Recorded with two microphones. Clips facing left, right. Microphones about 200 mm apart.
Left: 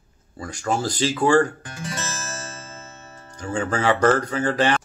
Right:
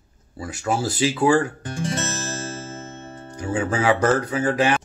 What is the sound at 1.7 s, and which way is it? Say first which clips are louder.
Music: right 6 dB; 25° right (ahead or behind).